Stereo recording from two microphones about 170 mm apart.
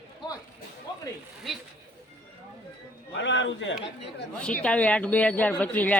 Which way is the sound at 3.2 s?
90° left.